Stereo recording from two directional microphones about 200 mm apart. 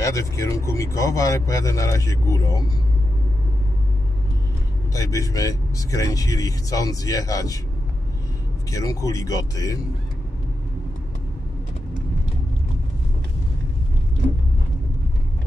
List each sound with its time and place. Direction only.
0.0 s a man's voice: 15° left (ahead or behind)
4.9 s a man's voice: 15° left (ahead or behind)
8.7 s a man's voice: 15° left (ahead or behind)